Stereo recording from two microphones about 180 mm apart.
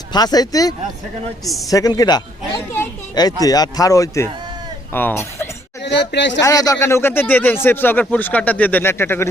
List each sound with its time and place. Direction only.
0.1 s speech: 20° left (ahead or behind)
1.7 s speech: 20° left (ahead or behind)
2.7 s a sound: 15° left (ahead or behind)
3.4 s speech: 20° left (ahead or behind)
5.8 s speech: 70° left (ahead or behind)
6.4 s speech: 20° left (ahead or behind)